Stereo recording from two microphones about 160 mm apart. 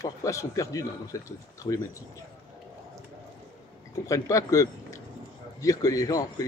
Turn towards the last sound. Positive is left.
turn(degrees=20)  # may be behind; listen again after turning